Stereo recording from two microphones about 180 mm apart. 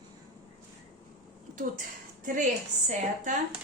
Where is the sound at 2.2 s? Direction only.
45° right (ahead or behind).